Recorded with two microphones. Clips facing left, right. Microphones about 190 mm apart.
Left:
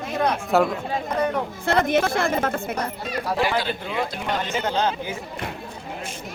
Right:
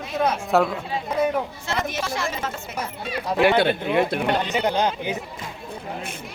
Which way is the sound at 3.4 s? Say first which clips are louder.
Right 8 dB; 60° right (ahead or behind).